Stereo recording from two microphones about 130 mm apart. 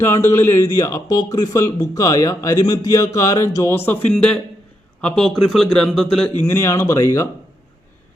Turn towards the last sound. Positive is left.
turn(degrees=25)  # may be behind; listen again after turning